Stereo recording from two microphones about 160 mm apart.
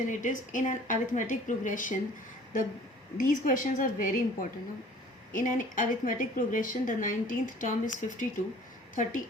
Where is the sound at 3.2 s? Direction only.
55° left (ahead or behind).